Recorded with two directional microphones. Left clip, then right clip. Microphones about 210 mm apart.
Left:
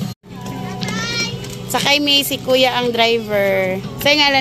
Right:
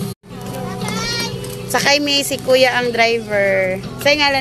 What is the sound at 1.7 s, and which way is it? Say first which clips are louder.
A woman's voice: even; 10° left (ahead or behind).